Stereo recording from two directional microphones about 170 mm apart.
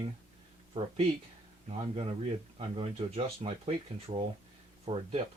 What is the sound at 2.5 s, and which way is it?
Speech, 35° right (ahead or behind).